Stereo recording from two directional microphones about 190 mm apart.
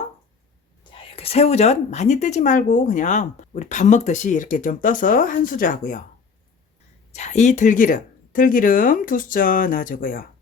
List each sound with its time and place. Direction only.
0.9 s speech: 30° left (ahead or behind); by 6.0 s 45° left (ahead or behind)
7.1 s speech: 35° left (ahead or behind)